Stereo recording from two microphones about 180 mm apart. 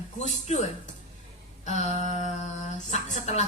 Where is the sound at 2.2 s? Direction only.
40° left (ahead or behind).